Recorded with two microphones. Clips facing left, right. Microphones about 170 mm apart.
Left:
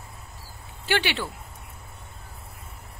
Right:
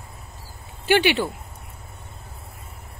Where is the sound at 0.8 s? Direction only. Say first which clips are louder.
Right 7 dB; 15° right (ahead or behind).